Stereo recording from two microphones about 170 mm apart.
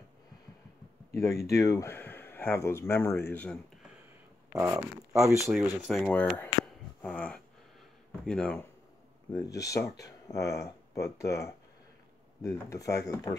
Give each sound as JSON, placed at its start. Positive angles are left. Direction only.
{"t": 1.5, "sound": "speech", "side_deg": 20}
{"t": 4.5, "sound": "speech", "side_deg": -10}
{"t": 7.0, "sound": "a sound", "side_deg": 5}
{"t": 8.3, "sound": "speech", "side_deg": 5}
{"t": 9.3, "sound": "speech", "side_deg": 20}